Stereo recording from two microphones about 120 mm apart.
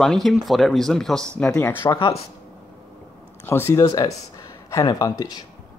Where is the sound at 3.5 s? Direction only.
20° left (ahead or behind).